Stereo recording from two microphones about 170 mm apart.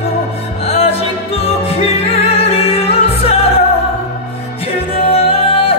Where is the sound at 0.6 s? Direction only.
35° left (ahead or behind).